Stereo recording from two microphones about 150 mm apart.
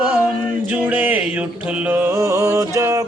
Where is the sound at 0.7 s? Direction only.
10° right (ahead or behind).